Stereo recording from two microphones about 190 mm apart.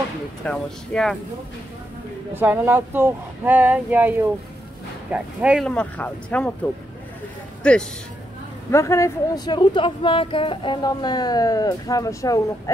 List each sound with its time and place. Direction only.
0.4 s speech: 5° left (ahead or behind)
2.3 s speech: 10° right (ahead or behind)
5.7 s speech: 5° left (ahead or behind)
8.7 s a woman's voice: 15° left (ahead or behind)